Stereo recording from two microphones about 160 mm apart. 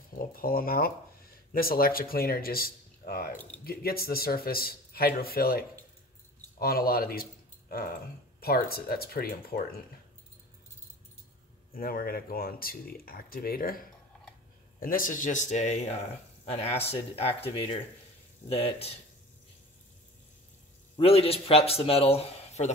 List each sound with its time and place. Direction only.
0.3 s speech: 65° left (ahead or behind)
11.7 s speech: 65° left (ahead or behind); by 18.9 s 40° left (ahead or behind)
20.9 s speech: 40° left (ahead or behind)